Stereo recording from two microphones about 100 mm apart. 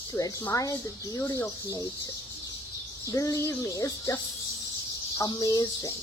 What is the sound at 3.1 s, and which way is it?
Speech, 35° left (ahead or behind).